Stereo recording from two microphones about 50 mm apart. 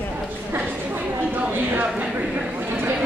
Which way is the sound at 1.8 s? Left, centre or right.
Right.